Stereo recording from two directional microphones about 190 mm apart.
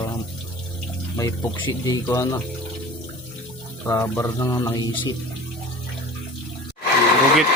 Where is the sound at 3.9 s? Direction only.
15° left (ahead or behind).